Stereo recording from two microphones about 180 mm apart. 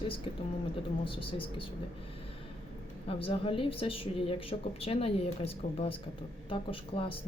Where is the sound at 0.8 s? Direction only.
30° left (ahead or behind).